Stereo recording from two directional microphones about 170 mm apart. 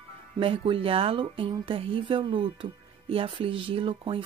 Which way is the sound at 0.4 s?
30° right (ahead or behind).